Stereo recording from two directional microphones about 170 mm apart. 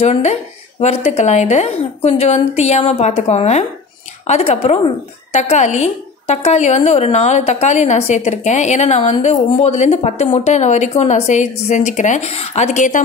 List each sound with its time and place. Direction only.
0.0 s speech: 40° left (ahead or behind)